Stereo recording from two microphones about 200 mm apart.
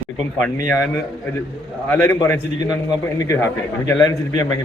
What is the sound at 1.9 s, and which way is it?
A man's voice, 10° left (ahead or behind).